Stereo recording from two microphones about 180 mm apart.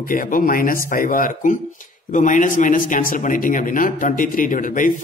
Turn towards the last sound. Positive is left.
turn(degrees=50)  # may be behind; listen again after turning